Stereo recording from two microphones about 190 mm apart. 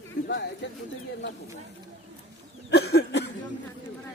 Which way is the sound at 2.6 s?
60° left (ahead or behind).